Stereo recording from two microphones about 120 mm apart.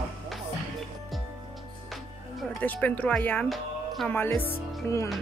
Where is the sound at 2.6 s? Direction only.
15° left (ahead or behind).